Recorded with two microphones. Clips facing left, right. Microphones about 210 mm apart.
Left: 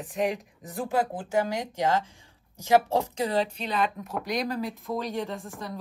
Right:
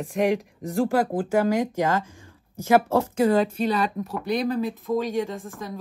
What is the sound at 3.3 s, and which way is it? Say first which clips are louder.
Speech: right 7 dB; 50° right (ahead or behind).